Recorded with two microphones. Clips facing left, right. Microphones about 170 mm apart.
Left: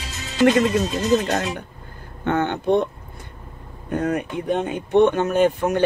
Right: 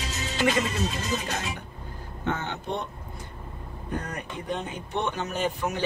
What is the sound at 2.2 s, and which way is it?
Speech, 60° left (ahead or behind).